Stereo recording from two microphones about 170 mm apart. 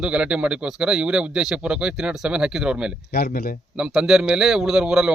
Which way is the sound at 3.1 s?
60° left (ahead or behind).